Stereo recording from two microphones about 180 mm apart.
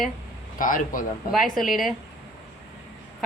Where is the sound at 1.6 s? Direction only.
Centre (ahead or behind).